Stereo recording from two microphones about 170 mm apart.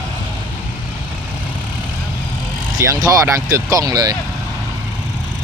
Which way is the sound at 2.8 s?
20° right (ahead or behind).